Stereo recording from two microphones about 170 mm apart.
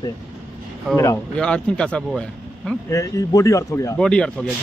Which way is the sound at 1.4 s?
5° left (ahead or behind).